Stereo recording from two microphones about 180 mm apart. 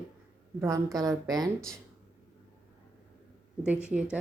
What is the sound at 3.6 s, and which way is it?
Speech, 5° right (ahead or behind).